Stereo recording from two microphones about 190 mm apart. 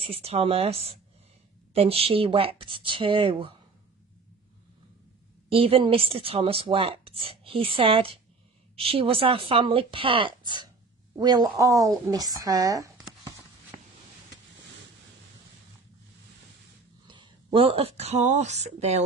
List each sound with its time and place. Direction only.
0.0 s a woman's voice: 30° right (ahead or behind)
5.5 s a woman's voice: 30° right (ahead or behind)
17.1 s speech: 25° right (ahead or behind)